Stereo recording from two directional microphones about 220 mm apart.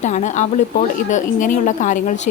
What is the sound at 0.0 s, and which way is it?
A woman's voice, 35° left (ahead or behind).